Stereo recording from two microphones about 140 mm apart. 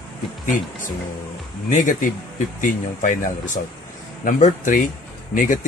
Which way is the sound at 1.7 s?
65° left (ahead or behind).